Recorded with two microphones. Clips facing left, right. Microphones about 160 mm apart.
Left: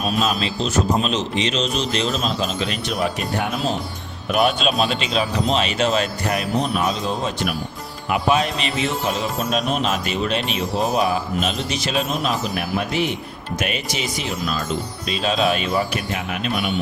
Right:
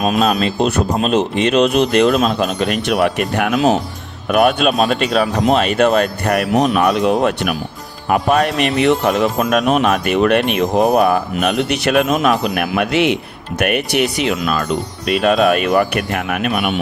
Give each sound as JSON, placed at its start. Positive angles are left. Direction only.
{"t": 0.2, "sound": "speech", "side_deg": -50}
{"t": 4.3, "sound": "speech", "side_deg": -50}
{"t": 8.1, "sound": "speech", "side_deg": -55}
{"t": 13.6, "sound": "speech", "side_deg": -65}